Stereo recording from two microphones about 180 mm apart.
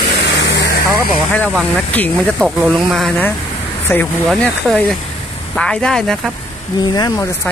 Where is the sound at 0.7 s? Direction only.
55° left (ahead or behind).